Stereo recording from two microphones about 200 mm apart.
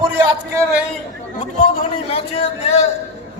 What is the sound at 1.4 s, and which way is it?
A man's voice, 30° left (ahead or behind).